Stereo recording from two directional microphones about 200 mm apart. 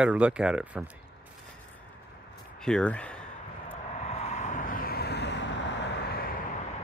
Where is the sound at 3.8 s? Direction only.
30° left (ahead or behind); by 6.4 s 55° left (ahead or behind).